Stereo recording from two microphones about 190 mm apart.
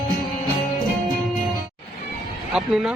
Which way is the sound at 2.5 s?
Centre (ahead or behind).